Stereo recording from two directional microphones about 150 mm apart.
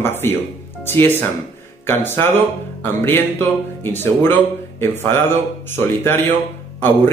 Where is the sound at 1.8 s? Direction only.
15° left (ahead or behind).